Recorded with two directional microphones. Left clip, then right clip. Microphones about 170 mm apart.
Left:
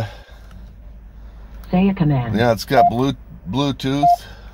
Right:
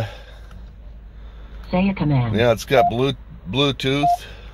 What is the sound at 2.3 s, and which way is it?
Speech, 5° left (ahead or behind).